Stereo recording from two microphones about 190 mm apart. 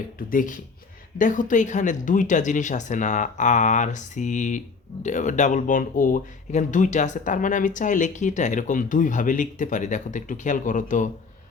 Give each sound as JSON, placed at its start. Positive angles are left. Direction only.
{"t": 0.2, "sound": "speech", "side_deg": 45}